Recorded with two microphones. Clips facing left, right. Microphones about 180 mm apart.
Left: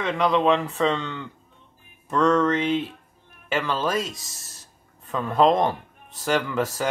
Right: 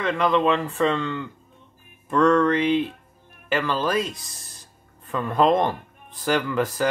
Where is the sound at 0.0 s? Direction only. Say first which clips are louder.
Even; 5° left (ahead or behind).